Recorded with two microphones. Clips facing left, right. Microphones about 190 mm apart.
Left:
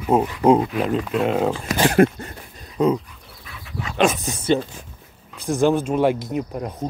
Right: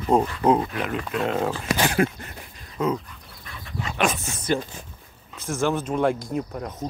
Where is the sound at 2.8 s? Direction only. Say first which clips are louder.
Left 6 dB; 15° left (ahead or behind).